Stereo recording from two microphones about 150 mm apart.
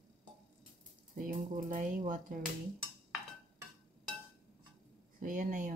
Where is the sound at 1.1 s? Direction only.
60° right (ahead or behind).